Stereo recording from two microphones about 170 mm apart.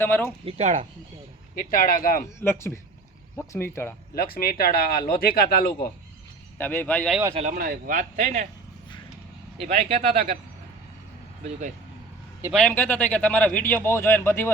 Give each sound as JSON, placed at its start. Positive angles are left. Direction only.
{"t": 0.0, "sound": "speech", "side_deg": 15}
{"t": 0.4, "sound": "speech", "side_deg": -40}
{"t": 1.5, "sound": "speech", "side_deg": 55}
{"t": 2.4, "sound": "speech", "side_deg": 15}
{"t": 4.1, "sound": "speech", "side_deg": 60}
{"t": 6.6, "sound": "speech", "side_deg": 10}
{"t": 7.5, "sound": "speech", "side_deg": -60}
{"t": 9.6, "sound": "speech", "side_deg": -35}
{"t": 12.6, "sound": "speech", "side_deg": 10}